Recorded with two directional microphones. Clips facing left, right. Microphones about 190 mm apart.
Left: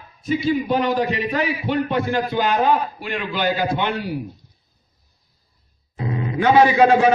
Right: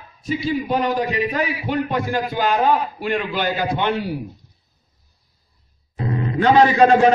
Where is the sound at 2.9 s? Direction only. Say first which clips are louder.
Right 5 dB; 45° right (ahead or behind).